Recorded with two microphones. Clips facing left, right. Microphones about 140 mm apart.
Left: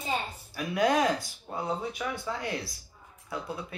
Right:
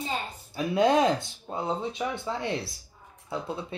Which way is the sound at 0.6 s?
25° right (ahead or behind).